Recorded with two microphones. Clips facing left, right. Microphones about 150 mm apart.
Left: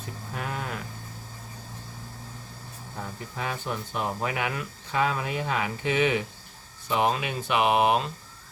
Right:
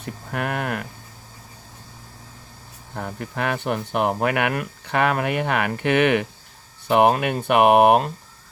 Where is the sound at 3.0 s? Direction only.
65° right (ahead or behind).